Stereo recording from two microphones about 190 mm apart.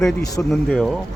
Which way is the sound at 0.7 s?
5° left (ahead or behind).